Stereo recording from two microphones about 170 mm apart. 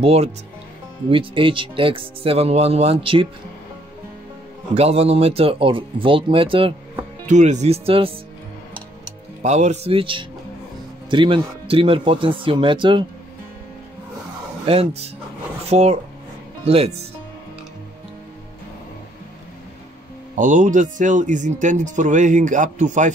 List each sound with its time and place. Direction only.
0.0 s speech: 35° right (ahead or behind)
4.7 s speech: 40° right (ahead or behind)
7.2 s speech: 45° right (ahead or behind)
9.4 s speech: 45° right (ahead or behind)
14.7 s speech: 35° right (ahead or behind)
20.3 s speech: 50° right (ahead or behind)